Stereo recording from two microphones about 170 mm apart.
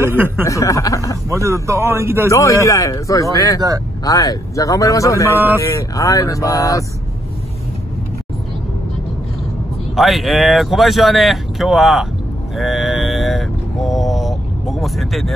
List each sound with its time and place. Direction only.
0.0 s speech: 15° right (ahead or behind)
0.5 s a man's voice: 20° left (ahead or behind)
1.3 s a man's voice: 15° right (ahead or behind)
2.2 s a man's voice: 20° left (ahead or behind)
9.9 s speech: centre (ahead or behind)
12.5 s mantra: centre (ahead or behind)